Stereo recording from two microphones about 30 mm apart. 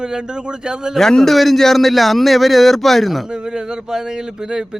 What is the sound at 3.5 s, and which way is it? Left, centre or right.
Speech, right.